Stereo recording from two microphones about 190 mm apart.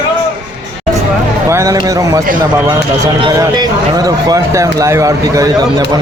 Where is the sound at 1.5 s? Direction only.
15° right (ahead or behind).